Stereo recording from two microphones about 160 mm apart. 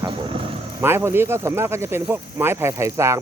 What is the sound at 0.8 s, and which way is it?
Speech, 15° right (ahead or behind).